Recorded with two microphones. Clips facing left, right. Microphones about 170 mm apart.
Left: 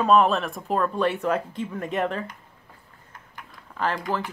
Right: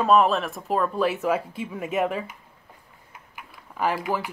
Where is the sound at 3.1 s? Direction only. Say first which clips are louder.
Even; 10° right (ahead or behind).